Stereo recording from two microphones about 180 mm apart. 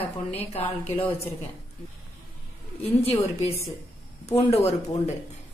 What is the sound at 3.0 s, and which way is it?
A woman's voice, 35° left (ahead or behind).